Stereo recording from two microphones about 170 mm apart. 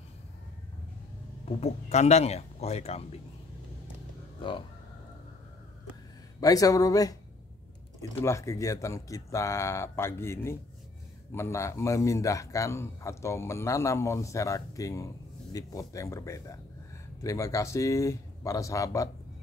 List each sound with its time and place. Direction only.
1.6 s speech: 40° left (ahead or behind)
4.4 s speech: 30° left (ahead or behind)
6.4 s a man's voice: 20° left (ahead or behind)